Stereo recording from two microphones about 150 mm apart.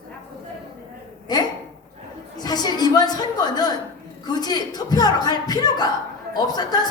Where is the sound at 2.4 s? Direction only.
25° left (ahead or behind).